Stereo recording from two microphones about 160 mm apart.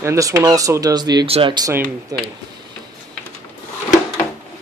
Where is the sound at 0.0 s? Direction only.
20° right (ahead or behind).